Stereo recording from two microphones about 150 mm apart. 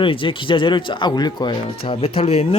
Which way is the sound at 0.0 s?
35° left (ahead or behind).